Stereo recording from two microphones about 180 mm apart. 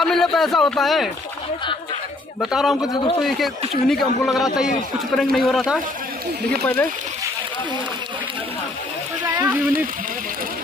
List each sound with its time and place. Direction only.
0.0 s speech: centre (ahead or behind)
2.4 s speech: centre (ahead or behind)
2.8 s a man's voice: 25° left (ahead or behind)
3.2 s speech: centre (ahead or behind)
9.3 s a sound: 10° right (ahead or behind)